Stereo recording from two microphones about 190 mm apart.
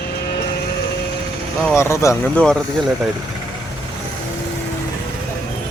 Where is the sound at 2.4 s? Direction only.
5° left (ahead or behind).